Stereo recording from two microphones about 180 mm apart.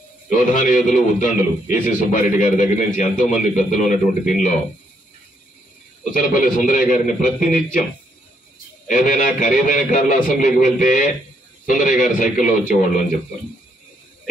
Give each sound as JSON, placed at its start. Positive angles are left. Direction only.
{"t": 0.5, "sound": "a man's voice", "side_deg": 45}
{"t": 6.1, "sound": "a man's voice", "side_deg": 50}
{"t": 8.8, "sound": "a man's voice", "side_deg": 50}